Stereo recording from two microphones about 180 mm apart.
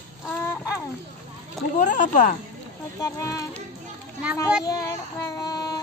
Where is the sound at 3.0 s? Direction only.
20° left (ahead or behind).